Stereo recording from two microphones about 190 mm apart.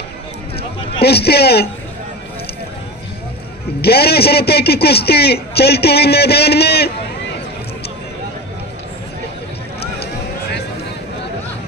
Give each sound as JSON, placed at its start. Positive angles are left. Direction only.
{"t": 0.6, "sound": "a sound", "side_deg": 30}
{"t": 1.0, "sound": "a man's voice", "side_deg": 55}
{"t": 3.8, "sound": "a man's voice", "side_deg": 55}